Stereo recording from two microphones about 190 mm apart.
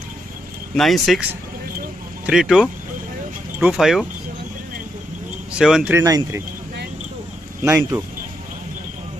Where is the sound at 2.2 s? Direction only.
5° right (ahead or behind).